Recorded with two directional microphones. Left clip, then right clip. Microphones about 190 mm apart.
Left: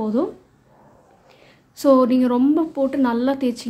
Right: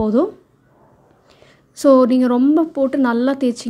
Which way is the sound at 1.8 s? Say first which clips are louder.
Right 3 dB; 20° right (ahead or behind).